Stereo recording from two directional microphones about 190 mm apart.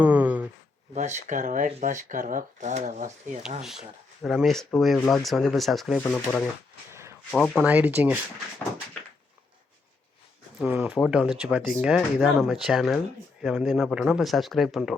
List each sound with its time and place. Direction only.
0.0 s a sound: 10° right (ahead or behind)
0.9 s speech: 35° right (ahead or behind)
3.6 s speech: centre (ahead or behind)
6.9 s a sound: 15° right (ahead or behind)
7.3 s speech: 5° left (ahead or behind)
7.6 s speech: 10° right (ahead or behind)
10.6 s speech: 5° right (ahead or behind)